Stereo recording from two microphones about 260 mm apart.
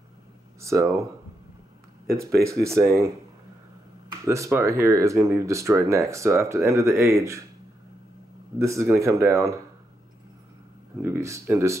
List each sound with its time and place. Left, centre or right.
0.6 s speech: centre
2.1 s speech: right
2.5 s speech: centre
4.3 s speech: centre
8.5 s speech: centre
11.0 s speech: centre